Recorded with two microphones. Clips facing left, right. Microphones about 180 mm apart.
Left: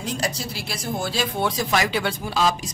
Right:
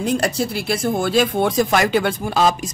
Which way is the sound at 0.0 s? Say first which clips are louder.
Right 8 dB; 55° right (ahead or behind).